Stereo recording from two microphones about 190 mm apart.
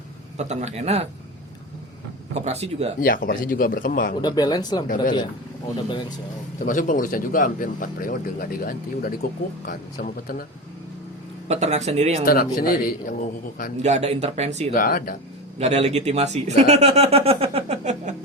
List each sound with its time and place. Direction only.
0.3 s speech: 35° right (ahead or behind)
2.3 s speech: 35° right (ahead or behind)
3.0 s speech: 50° left (ahead or behind)
4.2 s speech: 20° left (ahead or behind)
6.7 s speech: 45° left (ahead or behind)
11.4 s speech: 35° right (ahead or behind)
12.2 s speech: 50° left (ahead or behind)
13.8 s speech: 35° right (ahead or behind)
14.7 s speech: 50° left (ahead or behind)
15.5 s speech: 35° right (ahead or behind)